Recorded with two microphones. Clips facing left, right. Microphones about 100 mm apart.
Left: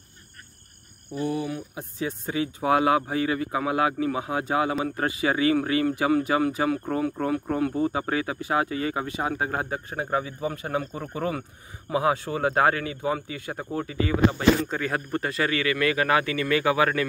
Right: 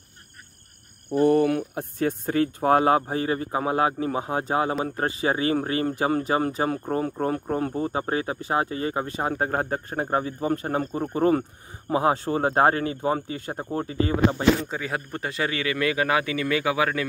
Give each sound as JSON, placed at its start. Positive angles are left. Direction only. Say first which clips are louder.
{"t": 1.1, "sound": "speech", "louder": "right 9 dB", "side_deg": -55}
{"t": 14.6, "sound": "speech", "louder": "left 2 dB", "side_deg": -15}